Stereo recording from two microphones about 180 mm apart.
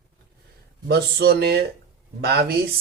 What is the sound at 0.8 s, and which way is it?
Speech, 65° right (ahead or behind).